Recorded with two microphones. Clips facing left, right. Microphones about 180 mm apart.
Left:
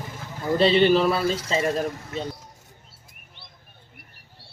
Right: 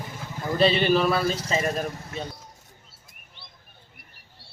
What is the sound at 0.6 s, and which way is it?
Speech, 25° left (ahead or behind).